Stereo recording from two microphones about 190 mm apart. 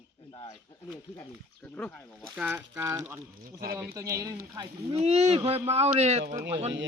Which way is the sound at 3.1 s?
50° right (ahead or behind).